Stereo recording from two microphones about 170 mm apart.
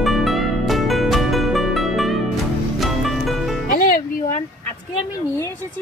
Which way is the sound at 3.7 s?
55° left (ahead or behind).